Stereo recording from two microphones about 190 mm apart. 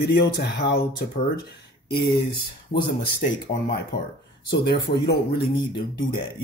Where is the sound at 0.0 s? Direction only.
55° left (ahead or behind).